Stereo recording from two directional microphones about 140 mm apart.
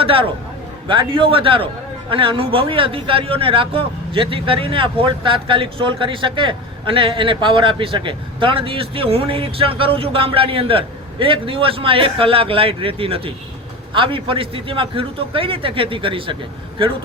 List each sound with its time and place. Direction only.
0.0 s a man's voice: 40° right (ahead or behind)